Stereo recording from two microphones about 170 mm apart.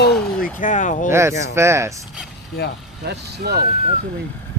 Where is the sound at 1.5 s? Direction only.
15° right (ahead or behind).